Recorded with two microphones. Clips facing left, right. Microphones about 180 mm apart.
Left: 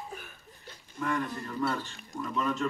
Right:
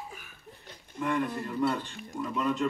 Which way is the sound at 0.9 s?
20° right (ahead or behind).